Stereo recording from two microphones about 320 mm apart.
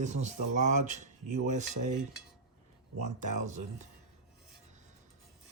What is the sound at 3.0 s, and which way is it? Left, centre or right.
Speech, right.